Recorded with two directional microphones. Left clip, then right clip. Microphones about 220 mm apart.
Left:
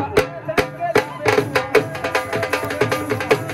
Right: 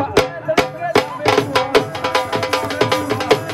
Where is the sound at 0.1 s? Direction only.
35° right (ahead or behind).